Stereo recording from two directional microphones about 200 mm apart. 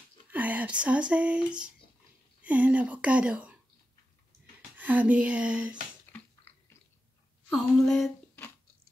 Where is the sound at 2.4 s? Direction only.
5° right (ahead or behind).